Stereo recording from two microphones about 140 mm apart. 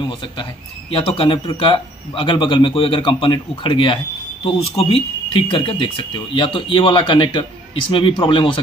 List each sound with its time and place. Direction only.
0.9 s a man's voice: 40° left (ahead or behind)